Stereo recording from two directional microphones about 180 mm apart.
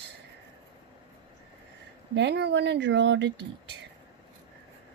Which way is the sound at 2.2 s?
70° right (ahead or behind).